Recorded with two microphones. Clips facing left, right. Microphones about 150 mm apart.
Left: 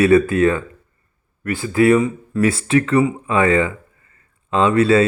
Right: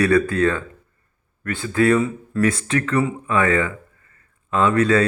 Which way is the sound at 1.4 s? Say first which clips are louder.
Left 4 dB; 5° left (ahead or behind).